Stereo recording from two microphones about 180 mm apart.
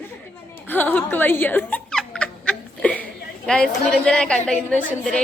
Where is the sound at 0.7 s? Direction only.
10° left (ahead or behind).